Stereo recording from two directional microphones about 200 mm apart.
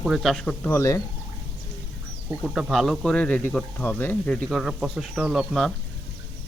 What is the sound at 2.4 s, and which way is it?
Speech, centre (ahead or behind).